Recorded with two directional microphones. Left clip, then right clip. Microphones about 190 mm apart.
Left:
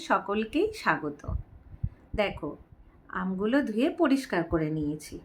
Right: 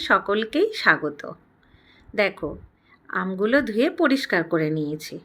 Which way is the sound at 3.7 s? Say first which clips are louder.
Right 5 dB; 10° right (ahead or behind).